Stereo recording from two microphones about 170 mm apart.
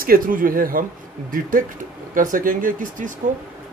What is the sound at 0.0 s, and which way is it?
Speech, 55° right (ahead or behind).